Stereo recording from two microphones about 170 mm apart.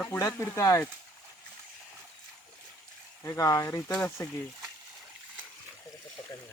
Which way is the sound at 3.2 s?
20° left (ahead or behind).